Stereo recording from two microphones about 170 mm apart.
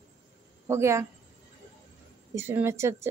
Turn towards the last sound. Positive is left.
turn(degrees=-15)  # may be behind; listen again after turning